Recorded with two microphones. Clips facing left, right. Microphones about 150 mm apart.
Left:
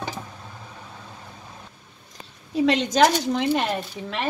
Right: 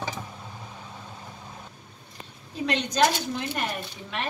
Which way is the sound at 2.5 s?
90° left.